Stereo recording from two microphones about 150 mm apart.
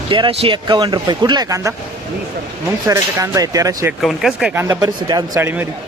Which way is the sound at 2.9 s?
20° right (ahead or behind).